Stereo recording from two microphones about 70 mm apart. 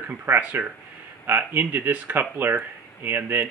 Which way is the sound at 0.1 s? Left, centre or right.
Right.